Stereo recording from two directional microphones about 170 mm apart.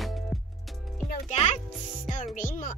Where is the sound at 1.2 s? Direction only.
40° left (ahead or behind).